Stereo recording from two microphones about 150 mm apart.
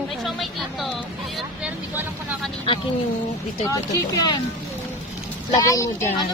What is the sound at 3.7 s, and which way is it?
Speech, 20° left (ahead or behind).